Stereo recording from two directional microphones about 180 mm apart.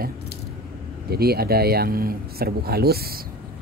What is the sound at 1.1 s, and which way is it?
Speech, 60° right (ahead or behind).